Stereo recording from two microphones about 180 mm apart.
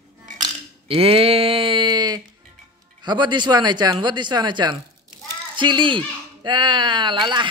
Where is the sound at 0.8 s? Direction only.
30° right (ahead or behind).